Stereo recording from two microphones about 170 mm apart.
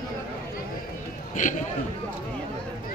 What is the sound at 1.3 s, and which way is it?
Speech, 45° left (ahead or behind).